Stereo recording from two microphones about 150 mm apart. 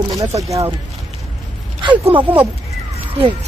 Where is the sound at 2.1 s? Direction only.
10° right (ahead or behind).